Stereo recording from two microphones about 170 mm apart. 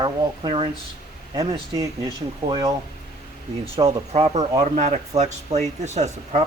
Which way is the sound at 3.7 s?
35° right (ahead or behind).